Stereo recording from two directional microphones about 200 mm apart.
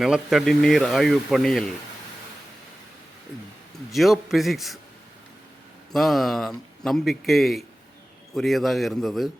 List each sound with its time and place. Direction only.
0.0 s speech: centre (ahead or behind)
3.9 s speech: centre (ahead or behind)
5.9 s speech: centre (ahead or behind)